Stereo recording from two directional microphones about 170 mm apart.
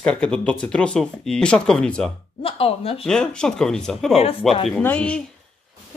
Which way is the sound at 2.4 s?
35° left (ahead or behind).